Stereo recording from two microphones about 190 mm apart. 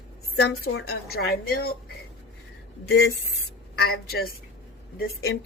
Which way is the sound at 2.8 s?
60° left (ahead or behind).